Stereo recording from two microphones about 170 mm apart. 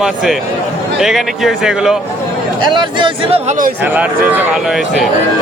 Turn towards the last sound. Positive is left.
turn(degrees=-10)  # may be behind; listen again after turning